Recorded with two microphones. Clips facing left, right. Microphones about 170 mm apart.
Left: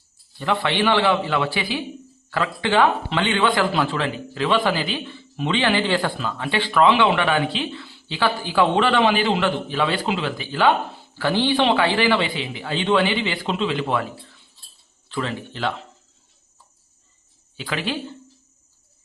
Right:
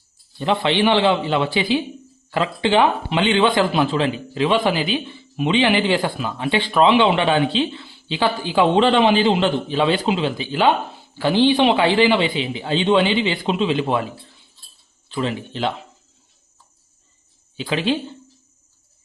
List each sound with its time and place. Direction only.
0.3 s speech: 20° right (ahead or behind)
15.1 s speech: 20° right (ahead or behind)
17.6 s speech: 20° right (ahead or behind)